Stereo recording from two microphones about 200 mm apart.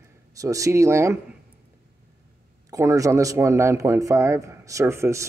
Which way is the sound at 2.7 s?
15° right (ahead or behind).